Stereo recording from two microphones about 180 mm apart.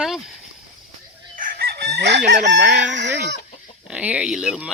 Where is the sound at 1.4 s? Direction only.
60° right (ahead or behind).